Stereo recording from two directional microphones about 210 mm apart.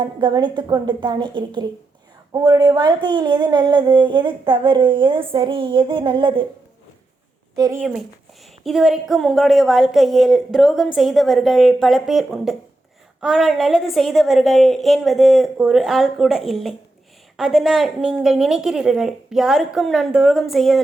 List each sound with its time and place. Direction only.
0.0 s a sound: 20° right (ahead or behind)
7.5 s speech: 20° right (ahead or behind)
7.8 s a woman's voice: centre (ahead or behind)